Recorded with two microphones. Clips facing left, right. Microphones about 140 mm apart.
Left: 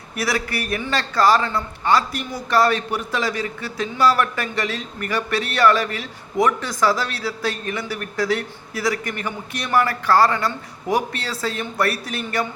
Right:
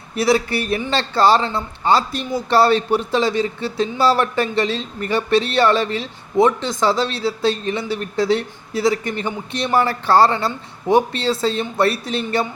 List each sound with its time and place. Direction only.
0.2 s speech: 25° right (ahead or behind)